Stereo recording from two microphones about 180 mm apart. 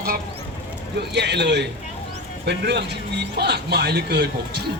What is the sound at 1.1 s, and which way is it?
A man's voice, 70° right (ahead or behind).